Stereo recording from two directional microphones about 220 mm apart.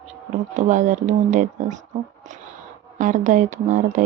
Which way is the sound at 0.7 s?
35° right (ahead or behind).